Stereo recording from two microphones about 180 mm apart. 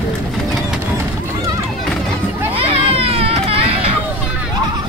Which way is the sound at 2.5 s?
35° right (ahead or behind).